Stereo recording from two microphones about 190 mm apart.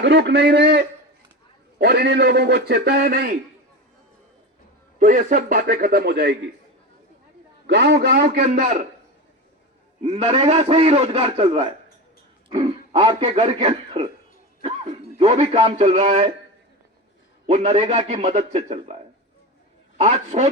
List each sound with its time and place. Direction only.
0.0 s a man's voice: 65° right (ahead or behind)
4.9 s a man's voice: 45° right (ahead or behind); by 6.3 s 60° right (ahead or behind)
7.7 s a man's voice: 65° right (ahead or behind); by 8.9 s 45° right (ahead or behind)
10.0 s a man's voice: 35° right (ahead or behind)
15.2 s a man's voice: 30° right (ahead or behind)
17.4 s a man's voice: 35° right (ahead or behind)
20.0 s a man's voice: 35° right (ahead or behind)